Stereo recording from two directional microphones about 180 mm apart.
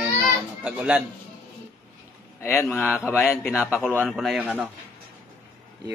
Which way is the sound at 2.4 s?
15° left (ahead or behind).